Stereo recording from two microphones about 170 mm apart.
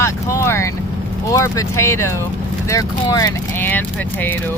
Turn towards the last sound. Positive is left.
turn(degrees=10)  # may be behind; listen again after turning